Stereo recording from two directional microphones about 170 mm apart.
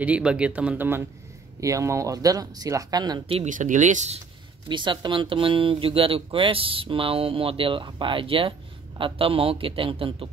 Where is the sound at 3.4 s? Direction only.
45° right (ahead or behind).